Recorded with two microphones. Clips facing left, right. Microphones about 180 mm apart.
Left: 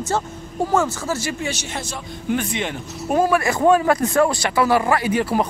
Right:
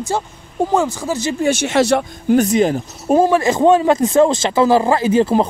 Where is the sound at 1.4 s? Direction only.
50° right (ahead or behind).